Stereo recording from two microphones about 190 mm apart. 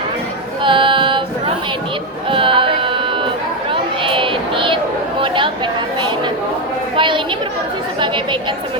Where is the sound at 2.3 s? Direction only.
25° right (ahead or behind).